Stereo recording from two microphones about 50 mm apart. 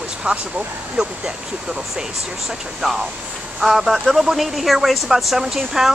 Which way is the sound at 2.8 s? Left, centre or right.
Centre.